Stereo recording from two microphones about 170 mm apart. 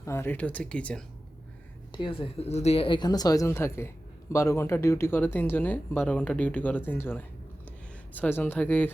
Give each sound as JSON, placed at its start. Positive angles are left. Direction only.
{"t": 0.0, "sound": "speech", "side_deg": 15}
{"t": 1.9, "sound": "speech", "side_deg": 30}